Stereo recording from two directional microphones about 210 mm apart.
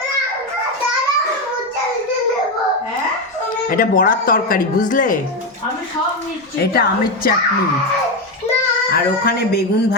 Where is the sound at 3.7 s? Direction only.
40° left (ahead or behind).